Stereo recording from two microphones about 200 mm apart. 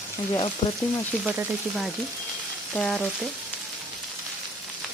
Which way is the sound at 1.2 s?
5° right (ahead or behind).